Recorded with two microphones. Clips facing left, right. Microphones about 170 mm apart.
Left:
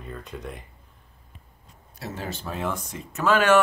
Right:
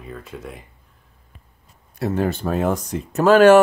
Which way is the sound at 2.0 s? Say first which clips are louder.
Right 12 dB; 55° right (ahead or behind).